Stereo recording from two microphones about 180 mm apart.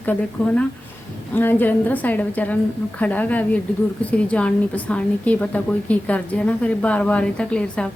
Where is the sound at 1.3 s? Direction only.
10° left (ahead or behind).